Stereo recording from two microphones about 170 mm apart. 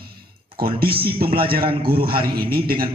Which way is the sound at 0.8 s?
65° right (ahead or behind).